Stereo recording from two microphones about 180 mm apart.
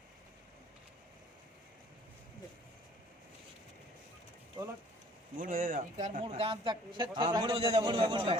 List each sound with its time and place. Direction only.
5.4 s speech: 50° right (ahead or behind)
6.1 s a man's voice: 30° right (ahead or behind)
8.0 s speech: 30° right (ahead or behind)